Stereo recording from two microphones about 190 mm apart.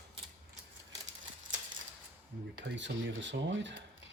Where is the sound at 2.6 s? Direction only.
70° right (ahead or behind).